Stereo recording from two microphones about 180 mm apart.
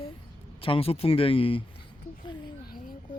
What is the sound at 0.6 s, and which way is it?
Speech, 30° left (ahead or behind).